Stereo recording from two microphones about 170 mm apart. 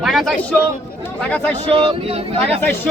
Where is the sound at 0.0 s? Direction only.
Centre (ahead or behind).